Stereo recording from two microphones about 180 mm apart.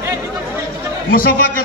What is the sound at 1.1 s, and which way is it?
Speech, 55° left (ahead or behind).